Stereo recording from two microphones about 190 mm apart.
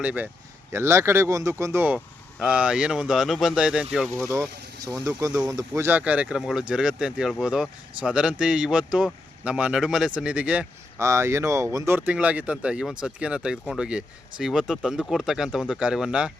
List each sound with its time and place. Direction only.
0.0 s a man's voice: 5° right (ahead or behind)
4.2 s a man's voice: 15° right (ahead or behind)